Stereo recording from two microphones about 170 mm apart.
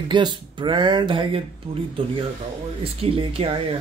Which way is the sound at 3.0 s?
35° right (ahead or behind).